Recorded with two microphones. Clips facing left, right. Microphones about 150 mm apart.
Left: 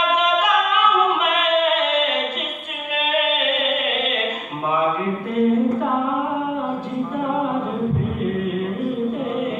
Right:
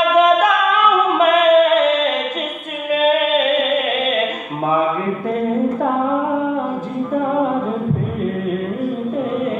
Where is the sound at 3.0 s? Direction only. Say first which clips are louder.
Right 6 dB; 45° right (ahead or behind).